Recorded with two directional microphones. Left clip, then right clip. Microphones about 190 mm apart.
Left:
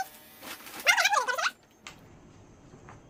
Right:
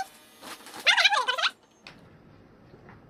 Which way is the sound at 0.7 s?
10° left (ahead or behind).